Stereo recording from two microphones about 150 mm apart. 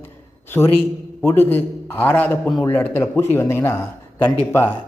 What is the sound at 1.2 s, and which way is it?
A man's voice, 15° left (ahead or behind).